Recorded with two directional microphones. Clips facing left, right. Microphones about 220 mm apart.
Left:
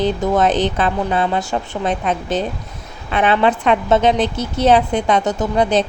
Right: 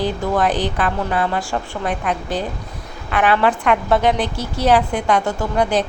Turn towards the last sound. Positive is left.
turn(degrees=20)  # may be behind; listen again after turning